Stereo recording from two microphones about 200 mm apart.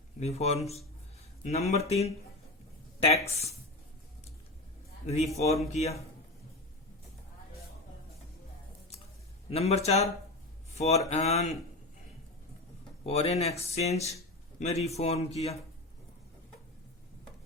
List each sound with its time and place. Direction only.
0.2 s speech: 30° left (ahead or behind)
3.2 s speech: 30° left (ahead or behind)
5.0 s speech: 30° left (ahead or behind)
9.5 s speech: 30° left (ahead or behind)
13.1 s speech: 30° left (ahead or behind)